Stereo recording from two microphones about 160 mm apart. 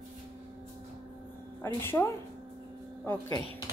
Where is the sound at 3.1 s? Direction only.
15° left (ahead or behind).